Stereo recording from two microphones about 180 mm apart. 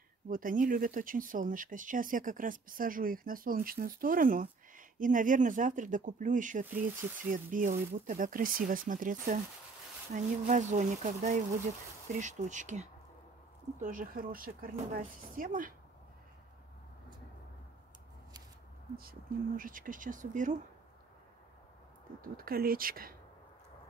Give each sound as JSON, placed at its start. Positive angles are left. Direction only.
{"t": 0.3, "sound": "speech", "side_deg": -50}
{"t": 18.9, "sound": "speech", "side_deg": -50}
{"t": 22.2, "sound": "speech", "side_deg": -55}